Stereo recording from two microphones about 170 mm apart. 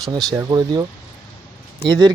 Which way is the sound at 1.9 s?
20° right (ahead or behind).